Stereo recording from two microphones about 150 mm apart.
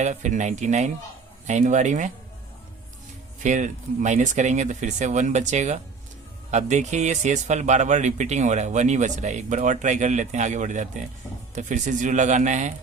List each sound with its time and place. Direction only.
0.0 s speech: 55° right (ahead or behind)
3.4 s a man's voice: 55° right (ahead or behind)